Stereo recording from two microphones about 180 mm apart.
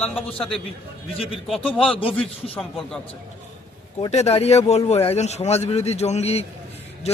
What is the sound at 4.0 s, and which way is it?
A man's voice, 35° left (ahead or behind).